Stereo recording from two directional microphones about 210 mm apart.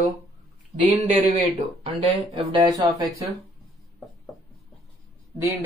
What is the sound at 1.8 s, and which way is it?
Speech, 25° right (ahead or behind).